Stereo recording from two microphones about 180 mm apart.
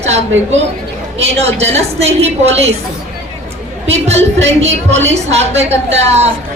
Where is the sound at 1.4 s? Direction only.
35° right (ahead or behind).